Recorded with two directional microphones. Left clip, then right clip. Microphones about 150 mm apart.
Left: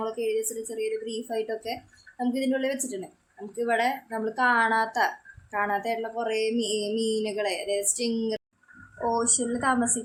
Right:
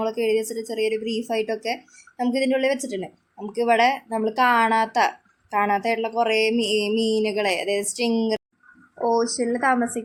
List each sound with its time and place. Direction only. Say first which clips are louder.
0.0 s speech: right 6 dB; 45° right (ahead or behind)
9.0 s speech: right 5 dB; 25° right (ahead or behind)